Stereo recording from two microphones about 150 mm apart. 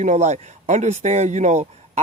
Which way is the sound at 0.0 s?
50° right (ahead or behind).